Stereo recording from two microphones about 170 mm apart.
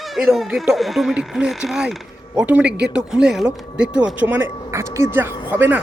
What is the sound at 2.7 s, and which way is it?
Speech, 75° right (ahead or behind).